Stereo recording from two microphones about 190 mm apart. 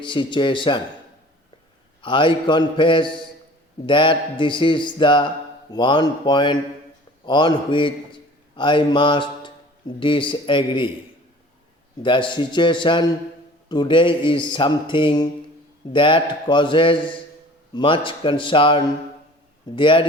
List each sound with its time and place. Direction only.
0.0 s a man's voice: 25° left (ahead or behind)
2.0 s a man's voice: 25° left (ahead or behind)
12.0 s a man's voice: 25° left (ahead or behind)